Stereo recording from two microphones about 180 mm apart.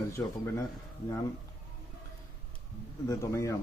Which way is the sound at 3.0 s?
15° left (ahead or behind).